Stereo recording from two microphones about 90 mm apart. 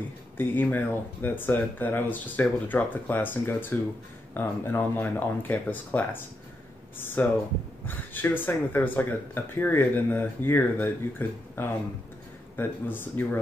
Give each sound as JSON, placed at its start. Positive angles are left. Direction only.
{"t": 0.4, "sound": "speech", "side_deg": 20}